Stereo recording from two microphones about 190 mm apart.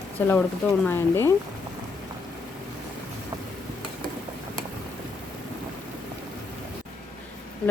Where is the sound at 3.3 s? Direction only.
20° right (ahead or behind).